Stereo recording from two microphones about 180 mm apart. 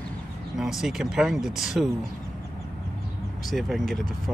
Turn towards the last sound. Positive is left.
turn(degrees=0)  # may be behind; listen again after turning